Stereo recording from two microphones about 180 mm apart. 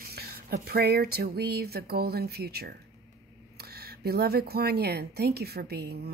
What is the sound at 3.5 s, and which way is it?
Speech, 60° right (ahead or behind).